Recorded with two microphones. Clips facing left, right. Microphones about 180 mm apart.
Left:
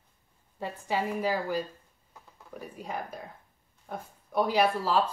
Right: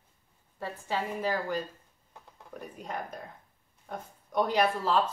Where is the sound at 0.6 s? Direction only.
10° left (ahead or behind).